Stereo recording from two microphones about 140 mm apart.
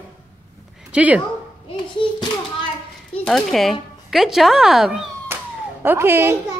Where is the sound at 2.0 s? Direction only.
35° left (ahead or behind).